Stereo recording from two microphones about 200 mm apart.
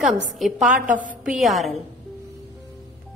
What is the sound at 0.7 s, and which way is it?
Speech, 40° right (ahead or behind).